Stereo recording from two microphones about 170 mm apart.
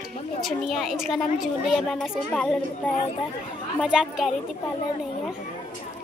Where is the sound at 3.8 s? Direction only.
5° right (ahead or behind).